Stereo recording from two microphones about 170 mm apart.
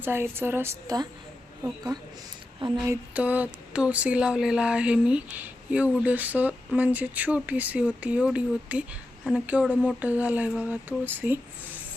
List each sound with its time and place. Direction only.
0.0 s mantra: 15° right (ahead or behind)
1.6 s a woman's voice: 20° right (ahead or behind)
2.9 s mantra: 10° right (ahead or behind)